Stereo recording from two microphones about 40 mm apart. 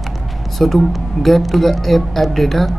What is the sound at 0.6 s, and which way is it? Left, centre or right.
Speech, centre.